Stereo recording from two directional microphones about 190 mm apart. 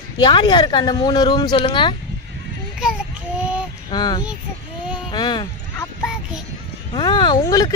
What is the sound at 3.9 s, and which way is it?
Speech, 25° left (ahead or behind).